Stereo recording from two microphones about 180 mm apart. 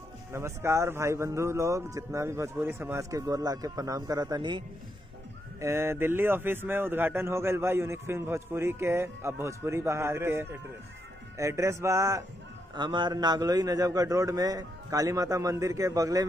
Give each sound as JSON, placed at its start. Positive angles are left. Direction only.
{"t": 0.3, "sound": "speech", "side_deg": -15}
{"t": 5.6, "sound": "a man's voice", "side_deg": -15}